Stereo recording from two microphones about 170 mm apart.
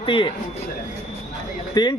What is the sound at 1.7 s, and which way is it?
Speech, 25° left (ahead or behind).